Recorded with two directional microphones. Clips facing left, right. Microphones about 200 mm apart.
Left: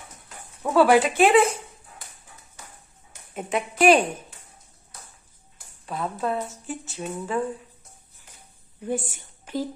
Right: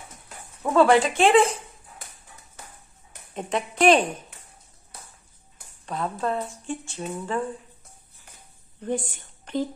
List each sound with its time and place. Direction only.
0.7 s speech: 5° left (ahead or behind)
3.3 s speech: 5° left (ahead or behind)
5.9 s speech: 5° left (ahead or behind)
8.8 s speech: 10° left (ahead or behind)
9.1 s a sound: 5° left (ahead or behind)